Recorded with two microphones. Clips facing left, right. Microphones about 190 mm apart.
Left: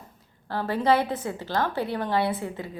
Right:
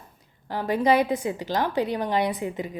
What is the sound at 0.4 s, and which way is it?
Speech, 15° right (ahead or behind).